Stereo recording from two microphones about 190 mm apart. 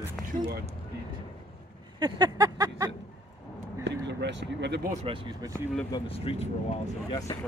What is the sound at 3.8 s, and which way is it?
Speech, 65° right (ahead or behind).